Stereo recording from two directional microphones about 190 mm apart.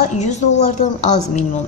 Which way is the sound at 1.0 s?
35° left (ahead or behind).